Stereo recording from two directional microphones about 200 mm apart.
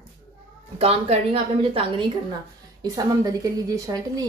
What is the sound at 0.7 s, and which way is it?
A woman's voice, 30° right (ahead or behind).